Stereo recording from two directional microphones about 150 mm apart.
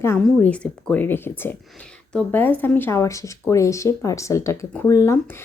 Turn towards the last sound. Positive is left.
turn(degrees=20)  # may be behind; listen again after turning